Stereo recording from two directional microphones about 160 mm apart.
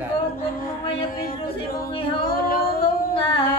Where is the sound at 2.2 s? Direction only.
65° left (ahead or behind).